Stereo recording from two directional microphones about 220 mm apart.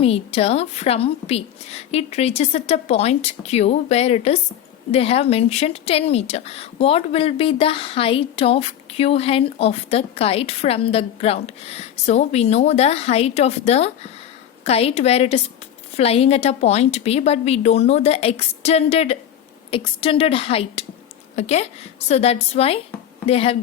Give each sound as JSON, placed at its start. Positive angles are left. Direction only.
{"t": 0.0, "sound": "a woman's voice", "side_deg": 25}